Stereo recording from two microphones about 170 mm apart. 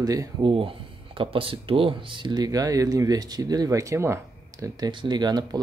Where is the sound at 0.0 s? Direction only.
20° right (ahead or behind).